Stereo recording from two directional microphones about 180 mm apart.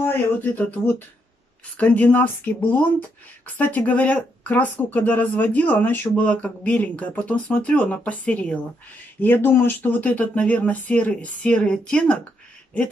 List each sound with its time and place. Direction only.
0.0 s speech: 10° left (ahead or behind)